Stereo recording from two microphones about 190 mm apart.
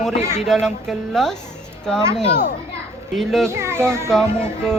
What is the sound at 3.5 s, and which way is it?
Speech, 15° right (ahead or behind).